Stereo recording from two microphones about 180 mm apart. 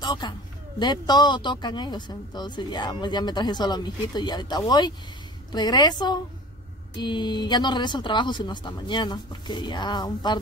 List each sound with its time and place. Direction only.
0.0 s speech: 25° left (ahead or behind)